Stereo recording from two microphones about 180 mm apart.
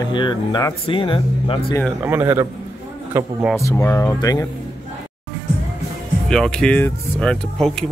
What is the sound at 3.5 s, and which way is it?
Speech, 15° left (ahead or behind).